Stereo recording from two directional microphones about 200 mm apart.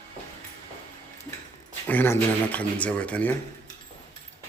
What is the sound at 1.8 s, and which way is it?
Speech, 10° left (ahead or behind).